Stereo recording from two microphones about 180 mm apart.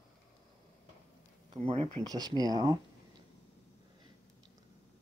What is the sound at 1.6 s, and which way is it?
Speech, 30° right (ahead or behind).